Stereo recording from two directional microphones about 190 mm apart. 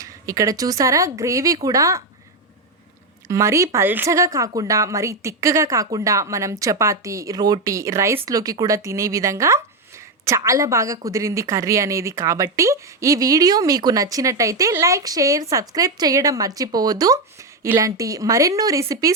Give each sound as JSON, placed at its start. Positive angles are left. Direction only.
{"t": 0.0, "sound": "a woman's voice", "side_deg": -15}
{"t": 3.2, "sound": "a woman's voice", "side_deg": -15}